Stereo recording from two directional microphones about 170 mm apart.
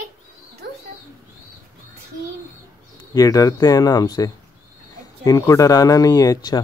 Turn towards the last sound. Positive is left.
turn(degrees=20)  # may be behind; listen again after turning